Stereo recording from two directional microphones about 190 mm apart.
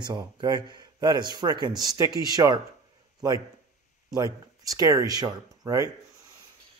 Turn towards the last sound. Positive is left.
turn(degrees=-20)  # may be behind; listen again after turning